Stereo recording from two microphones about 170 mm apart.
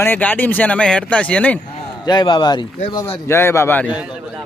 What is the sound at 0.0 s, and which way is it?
Speech, 10° left (ahead or behind).